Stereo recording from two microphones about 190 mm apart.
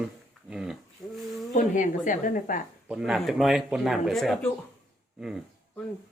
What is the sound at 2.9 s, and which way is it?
Speech, 5° right (ahead or behind).